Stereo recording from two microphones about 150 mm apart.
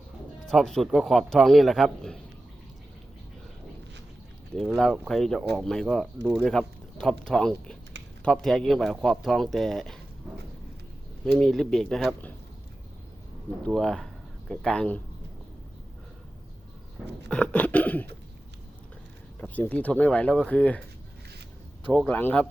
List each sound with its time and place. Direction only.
0.4 s speech: centre (ahead or behind)
4.5 s speech: centre (ahead or behind)
11.3 s speech: centre (ahead or behind)
13.7 s speech: 5° left (ahead or behind)
17.2 s speech: 5° left (ahead or behind)
19.4 s speech: 10° left (ahead or behind)
21.8 s speech: 10° left (ahead or behind)